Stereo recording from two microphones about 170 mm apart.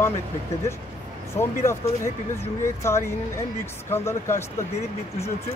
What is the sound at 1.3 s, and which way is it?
Speech, 15° left (ahead or behind).